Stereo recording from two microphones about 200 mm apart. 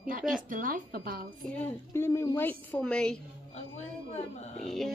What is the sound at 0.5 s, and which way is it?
Speech, 45° right (ahead or behind).